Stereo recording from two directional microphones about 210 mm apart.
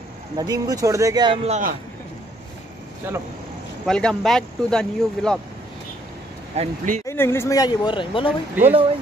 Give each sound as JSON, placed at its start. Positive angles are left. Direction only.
{"t": 0.4, "sound": "speech", "side_deg": -15}
{"t": 3.8, "sound": "speech", "side_deg": 5}
{"t": 6.5, "sound": "speech", "side_deg": -30}
{"t": 7.1, "sound": "speech", "side_deg": 10}
{"t": 8.6, "sound": "speech", "side_deg": -10}